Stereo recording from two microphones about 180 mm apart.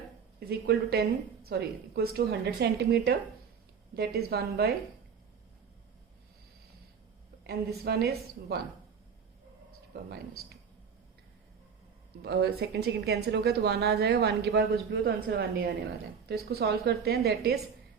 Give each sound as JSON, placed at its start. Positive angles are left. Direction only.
{"t": 0.3, "sound": "a woman's voice", "side_deg": -60}
{"t": 7.4, "sound": "a woman's voice", "side_deg": -65}
{"t": 9.9, "sound": "a woman's voice", "side_deg": -60}
{"t": 12.2, "sound": "a woman's voice", "side_deg": -65}